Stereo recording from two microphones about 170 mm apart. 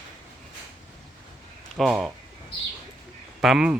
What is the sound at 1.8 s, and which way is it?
Speech, centre (ahead or behind).